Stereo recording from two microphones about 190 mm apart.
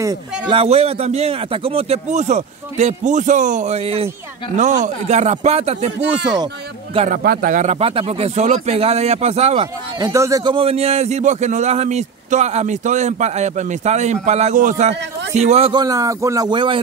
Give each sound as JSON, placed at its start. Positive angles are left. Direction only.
{"t": 0.0, "sound": "a man's voice", "side_deg": -25}
{"t": 7.1, "sound": "a man's voice", "side_deg": -45}
{"t": 9.9, "sound": "a man's voice", "side_deg": -20}
{"t": 15.7, "sound": "a man's voice", "side_deg": -20}